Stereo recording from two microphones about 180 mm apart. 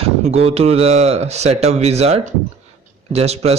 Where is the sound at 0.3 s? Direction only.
35° right (ahead or behind).